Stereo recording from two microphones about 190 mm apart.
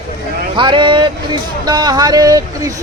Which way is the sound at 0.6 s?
25° right (ahead or behind).